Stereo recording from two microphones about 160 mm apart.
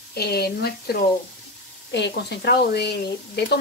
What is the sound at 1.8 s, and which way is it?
Speech, 90° left.